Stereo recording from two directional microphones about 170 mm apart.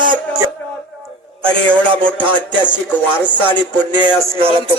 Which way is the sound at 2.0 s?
10° left (ahead or behind).